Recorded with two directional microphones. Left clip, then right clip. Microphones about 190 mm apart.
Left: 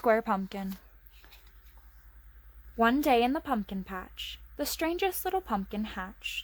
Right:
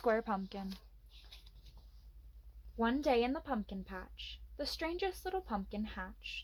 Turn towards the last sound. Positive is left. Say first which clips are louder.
# left 8 dB
turn(degrees=40)  # may be behind; listen again after turning